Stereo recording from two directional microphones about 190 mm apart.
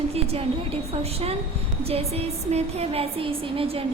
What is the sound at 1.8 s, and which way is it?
A woman's voice, 30° right (ahead or behind).